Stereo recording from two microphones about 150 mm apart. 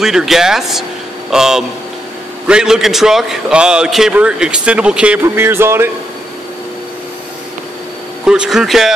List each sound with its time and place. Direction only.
0.0 s a man's voice: 5° right (ahead or behind)
8.3 s a man's voice: 5° right (ahead or behind)